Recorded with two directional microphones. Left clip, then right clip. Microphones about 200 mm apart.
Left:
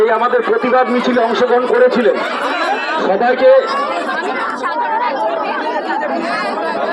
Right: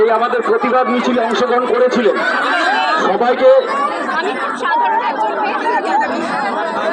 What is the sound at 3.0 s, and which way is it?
Speech, 20° right (ahead or behind).